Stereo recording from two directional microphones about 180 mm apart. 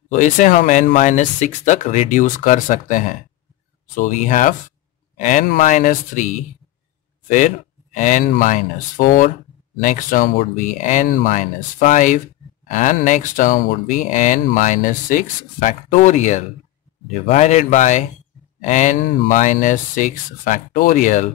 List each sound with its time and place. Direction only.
0.1 s speech: 45° left (ahead or behind)